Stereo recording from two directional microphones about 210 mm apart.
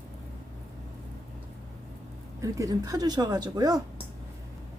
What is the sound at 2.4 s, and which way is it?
Speech, 15° right (ahead or behind).